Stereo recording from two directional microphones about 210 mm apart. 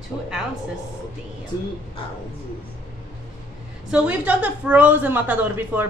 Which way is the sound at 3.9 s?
5° right (ahead or behind).